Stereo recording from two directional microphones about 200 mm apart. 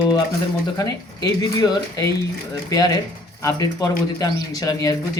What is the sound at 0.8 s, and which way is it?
Speech, 20° left (ahead or behind).